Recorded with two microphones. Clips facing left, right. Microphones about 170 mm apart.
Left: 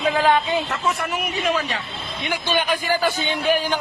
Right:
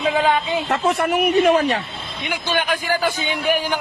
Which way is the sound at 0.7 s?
60° right (ahead or behind).